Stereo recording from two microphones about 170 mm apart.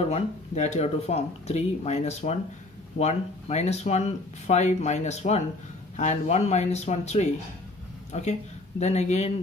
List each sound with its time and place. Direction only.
0.0 s speech: 40° left (ahead or behind)